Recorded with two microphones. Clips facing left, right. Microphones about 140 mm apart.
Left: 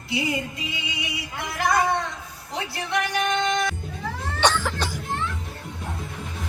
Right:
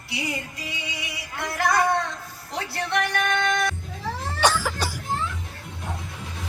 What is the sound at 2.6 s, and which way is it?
Speech, 20° left (ahead or behind).